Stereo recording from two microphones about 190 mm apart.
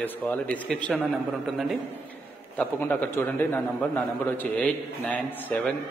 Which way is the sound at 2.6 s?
10° left (ahead or behind).